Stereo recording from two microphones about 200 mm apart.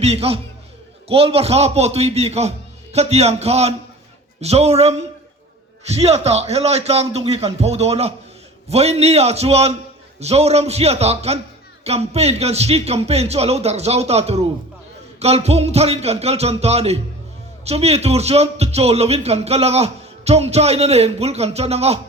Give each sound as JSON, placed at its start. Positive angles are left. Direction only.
{"t": 0.0, "sound": "speech", "side_deg": -30}